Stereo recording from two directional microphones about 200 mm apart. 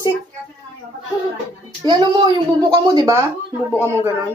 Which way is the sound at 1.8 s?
20° right (ahead or behind).